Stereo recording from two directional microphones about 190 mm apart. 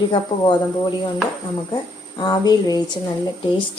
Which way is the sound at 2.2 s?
20° left (ahead or behind).